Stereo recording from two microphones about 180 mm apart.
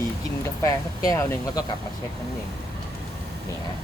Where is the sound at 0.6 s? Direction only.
20° left (ahead or behind).